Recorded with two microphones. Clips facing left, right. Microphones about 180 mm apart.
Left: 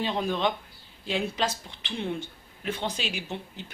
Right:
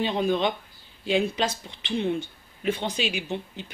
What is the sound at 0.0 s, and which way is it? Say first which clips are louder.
Speech: right 3 dB; 5° right (ahead or behind).